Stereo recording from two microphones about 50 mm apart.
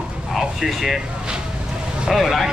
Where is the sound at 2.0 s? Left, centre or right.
Centre.